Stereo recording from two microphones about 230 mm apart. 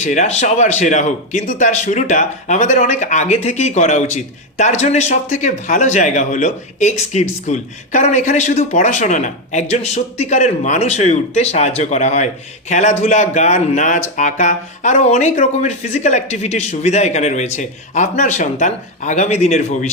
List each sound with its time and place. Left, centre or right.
0.0 s a man's voice: left